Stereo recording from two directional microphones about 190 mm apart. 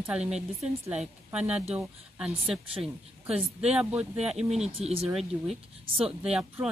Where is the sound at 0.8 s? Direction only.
5° right (ahead or behind).